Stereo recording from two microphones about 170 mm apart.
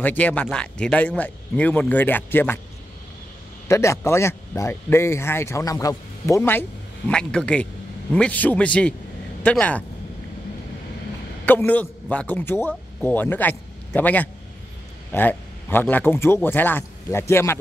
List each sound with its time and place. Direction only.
0.0 s speech: 10° left (ahead or behind)
3.6 s speech: 15° left (ahead or behind)
7.1 s a man's voice: 5° left (ahead or behind)
11.4 s a man's voice: 10° left (ahead or behind)